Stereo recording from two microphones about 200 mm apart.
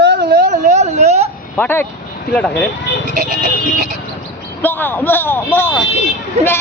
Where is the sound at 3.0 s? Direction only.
40° right (ahead or behind).